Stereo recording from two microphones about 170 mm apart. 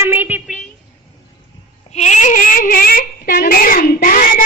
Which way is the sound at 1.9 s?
45° left (ahead or behind).